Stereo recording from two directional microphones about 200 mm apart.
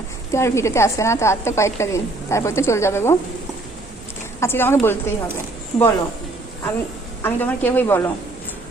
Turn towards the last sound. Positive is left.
turn(degrees=10)  # may be behind; listen again after turning